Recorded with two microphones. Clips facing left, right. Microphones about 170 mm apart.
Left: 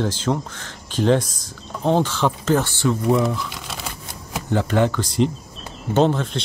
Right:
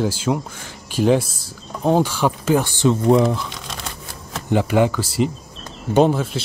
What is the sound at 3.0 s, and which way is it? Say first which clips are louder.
Speech: right 4 dB; centre (ahead or behind).